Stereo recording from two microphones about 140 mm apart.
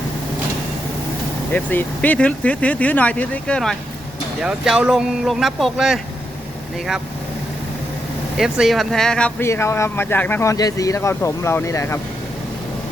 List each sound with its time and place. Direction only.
1.5 s speech: 10° left (ahead or behind)
8.4 s speech: centre (ahead or behind)
9.4 s speech: 20° left (ahead or behind)